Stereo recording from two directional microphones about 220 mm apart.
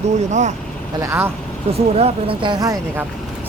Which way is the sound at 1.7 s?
25° right (ahead or behind).